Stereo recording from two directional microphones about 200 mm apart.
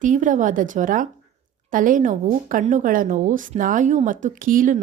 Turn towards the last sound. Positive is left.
turn(degrees=-40)  # may be behind; listen again after turning